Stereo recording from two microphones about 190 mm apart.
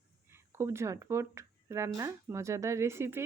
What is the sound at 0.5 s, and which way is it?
Speech, 15° right (ahead or behind).